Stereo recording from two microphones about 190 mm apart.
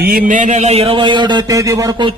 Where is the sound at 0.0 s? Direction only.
50° right (ahead or behind).